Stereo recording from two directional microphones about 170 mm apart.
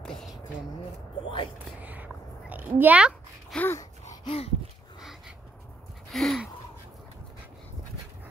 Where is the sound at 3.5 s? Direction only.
10° left (ahead or behind).